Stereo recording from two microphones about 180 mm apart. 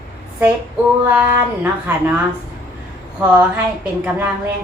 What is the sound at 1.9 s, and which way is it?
Speech, 10° right (ahead or behind).